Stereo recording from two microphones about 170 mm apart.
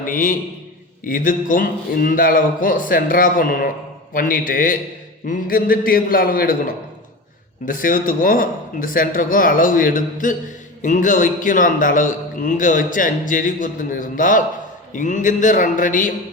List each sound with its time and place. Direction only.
0.0 s a man's voice: 50° left (ahead or behind)